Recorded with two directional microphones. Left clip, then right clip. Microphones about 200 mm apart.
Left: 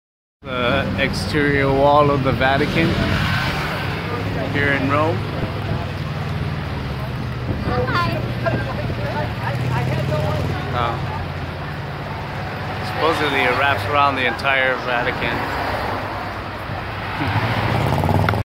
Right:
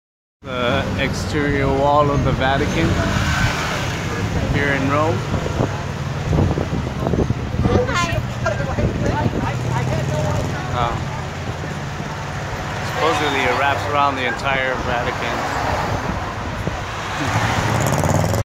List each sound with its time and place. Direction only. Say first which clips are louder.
0.6 s speech: left 1 dB; 5° left (ahead or behind)
4.6 s speech: even; centre (ahead or behind)
13.3 s speech: even; 5° left (ahead or behind)